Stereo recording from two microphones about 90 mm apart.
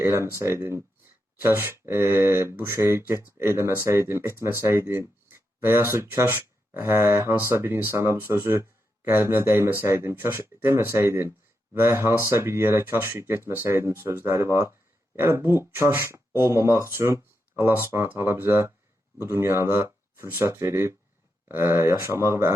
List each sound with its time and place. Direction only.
0.0 s speech: 30° right (ahead or behind)